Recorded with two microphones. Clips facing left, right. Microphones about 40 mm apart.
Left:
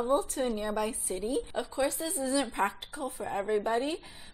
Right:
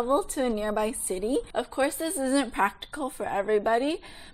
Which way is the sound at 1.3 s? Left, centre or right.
Right.